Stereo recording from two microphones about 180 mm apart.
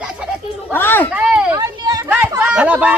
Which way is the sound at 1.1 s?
5° right (ahead or behind).